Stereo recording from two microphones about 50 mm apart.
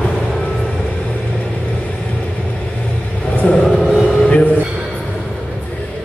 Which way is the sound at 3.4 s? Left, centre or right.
Left.